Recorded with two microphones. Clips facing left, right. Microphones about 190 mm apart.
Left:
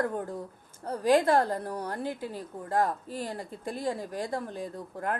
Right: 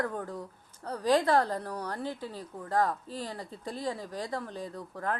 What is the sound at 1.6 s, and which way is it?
Speech, 10° left (ahead or behind).